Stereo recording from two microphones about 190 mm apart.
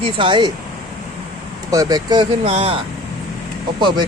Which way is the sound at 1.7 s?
20° right (ahead or behind).